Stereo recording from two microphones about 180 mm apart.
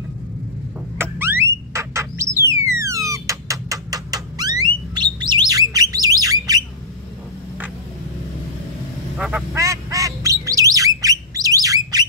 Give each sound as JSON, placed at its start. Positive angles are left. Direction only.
{"t": 0.9, "sound": "a sound", "side_deg": -10}
{"t": 9.2, "sound": "quack", "side_deg": -5}
{"t": 9.6, "sound": "squawk", "side_deg": -15}